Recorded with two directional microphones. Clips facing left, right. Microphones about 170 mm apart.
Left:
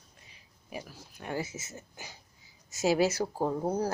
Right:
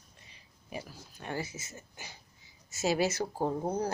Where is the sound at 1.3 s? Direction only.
20° left (ahead or behind).